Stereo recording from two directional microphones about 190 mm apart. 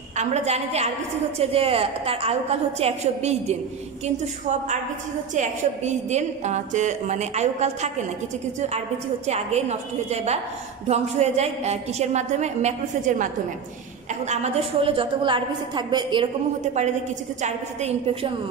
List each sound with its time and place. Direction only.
0.2 s a woman's voice: 35° right (ahead or behind)
17.4 s a woman's voice: 35° right (ahead or behind)